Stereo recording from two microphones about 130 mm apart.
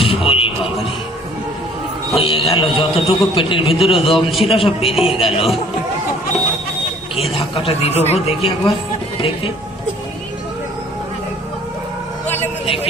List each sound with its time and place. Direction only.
0.0 s a sound: 45° left (ahead or behind)
2.1 s a man's voice: 45° left (ahead or behind)
3.9 s a man's voice: centre (ahead or behind)
4.4 s a man's voice: 45° left (ahead or behind)
7.2 s a man's voice: 45° left (ahead or behind)
12.4 s vehicle: 45° left (ahead or behind)